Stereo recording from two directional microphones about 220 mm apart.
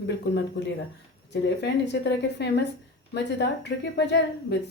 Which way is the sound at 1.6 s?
50° left (ahead or behind).